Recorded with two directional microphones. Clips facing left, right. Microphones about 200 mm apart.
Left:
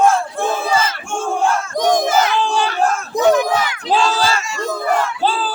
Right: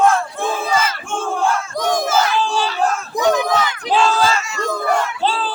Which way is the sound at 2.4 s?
55° left (ahead or behind).